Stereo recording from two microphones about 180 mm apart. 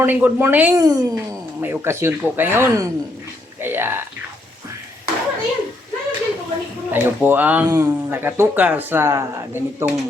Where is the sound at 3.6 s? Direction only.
10° right (ahead or behind).